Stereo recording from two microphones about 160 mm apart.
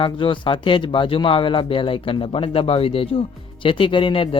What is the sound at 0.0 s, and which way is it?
Speech, 30° left (ahead or behind).